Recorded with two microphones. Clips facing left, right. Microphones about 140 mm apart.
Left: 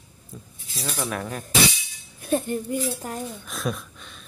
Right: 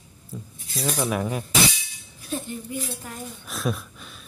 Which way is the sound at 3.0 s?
40° left (ahead or behind).